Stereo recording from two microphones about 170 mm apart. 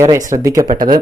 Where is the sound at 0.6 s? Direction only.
50° right (ahead or behind).